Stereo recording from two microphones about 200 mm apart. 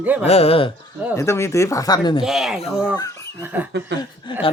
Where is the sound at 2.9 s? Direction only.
20° left (ahead or behind).